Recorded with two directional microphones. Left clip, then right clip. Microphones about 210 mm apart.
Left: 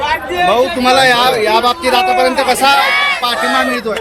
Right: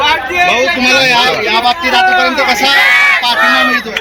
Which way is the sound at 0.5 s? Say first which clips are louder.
Right 1 dB; 50° left (ahead or behind).